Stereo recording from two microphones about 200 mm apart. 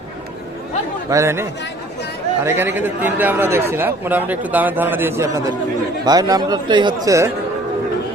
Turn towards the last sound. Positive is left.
turn(degrees=-15)  # may be behind; listen again after turning